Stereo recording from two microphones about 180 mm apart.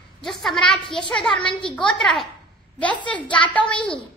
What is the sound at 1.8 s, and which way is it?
Speech, 5° left (ahead or behind).